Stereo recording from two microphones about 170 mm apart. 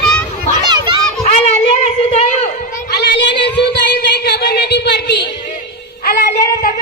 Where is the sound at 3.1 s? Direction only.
90° left.